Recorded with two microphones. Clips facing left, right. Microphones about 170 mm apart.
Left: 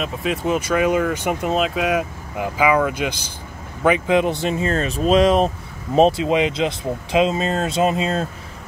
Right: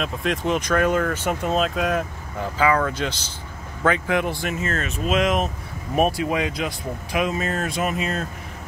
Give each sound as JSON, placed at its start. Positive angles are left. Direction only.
{"t": 0.0, "sound": "speech", "side_deg": 5}